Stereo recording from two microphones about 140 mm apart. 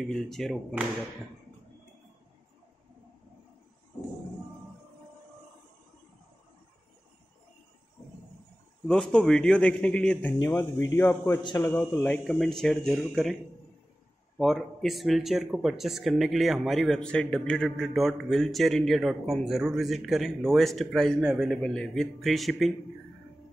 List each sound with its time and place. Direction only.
0.0 s speech: centre (ahead or behind)
8.8 s a man's voice: 5° left (ahead or behind); by 11.7 s 25° left (ahead or behind)
11.7 s speech: 15° left (ahead or behind)
14.4 s speech: centre (ahead or behind)